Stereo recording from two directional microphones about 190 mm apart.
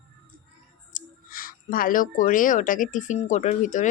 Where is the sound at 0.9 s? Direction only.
45° left (ahead or behind).